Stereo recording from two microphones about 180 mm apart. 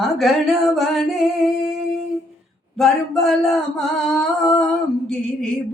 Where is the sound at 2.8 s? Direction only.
Centre (ahead or behind).